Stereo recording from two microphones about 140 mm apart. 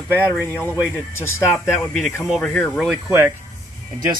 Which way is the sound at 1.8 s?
5° left (ahead or behind).